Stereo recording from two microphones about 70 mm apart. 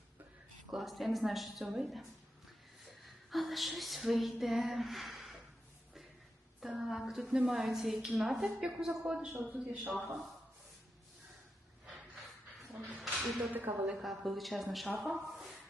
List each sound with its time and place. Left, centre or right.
0.7 s a woman's voice: centre
3.2 s a woman's voice: centre
6.6 s a woman's voice: centre
12.7 s a sound: centre
13.1 s speech: centre
13.5 s speech: right
14.0 s a woman's voice: centre